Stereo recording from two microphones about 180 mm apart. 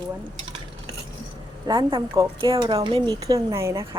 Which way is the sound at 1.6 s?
25° right (ahead or behind).